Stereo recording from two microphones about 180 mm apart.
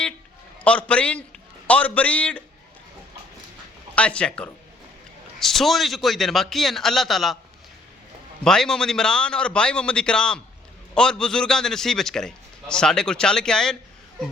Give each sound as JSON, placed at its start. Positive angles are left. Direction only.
{"t": 0.6, "sound": "a man's voice", "side_deg": 5}
{"t": 3.9, "sound": "a man's voice", "side_deg": 5}
{"t": 8.4, "sound": "a man's voice", "side_deg": 5}